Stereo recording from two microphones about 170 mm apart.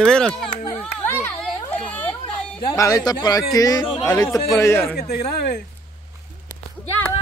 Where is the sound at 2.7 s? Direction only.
20° left (ahead or behind).